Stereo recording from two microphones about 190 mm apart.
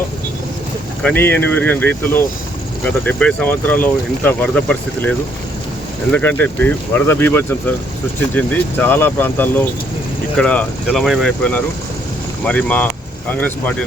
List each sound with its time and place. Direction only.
1.0 s speech: 10° left (ahead or behind)